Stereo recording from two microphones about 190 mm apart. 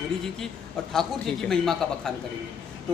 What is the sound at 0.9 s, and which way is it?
Speech, centre (ahead or behind).